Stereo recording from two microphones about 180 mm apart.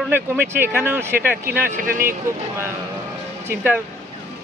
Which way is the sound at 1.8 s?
50° right (ahead or behind).